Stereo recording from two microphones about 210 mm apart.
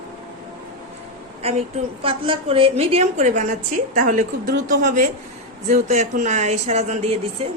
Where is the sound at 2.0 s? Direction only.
25° right (ahead or behind).